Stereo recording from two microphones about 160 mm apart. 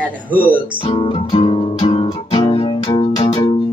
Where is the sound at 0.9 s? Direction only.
35° left (ahead or behind).